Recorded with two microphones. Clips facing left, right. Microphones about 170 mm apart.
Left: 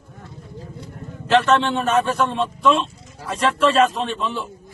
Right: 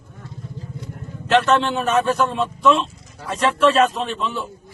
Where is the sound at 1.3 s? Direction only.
Centre (ahead or behind).